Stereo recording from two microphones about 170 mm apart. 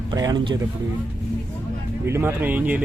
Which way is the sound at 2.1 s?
15° right (ahead or behind).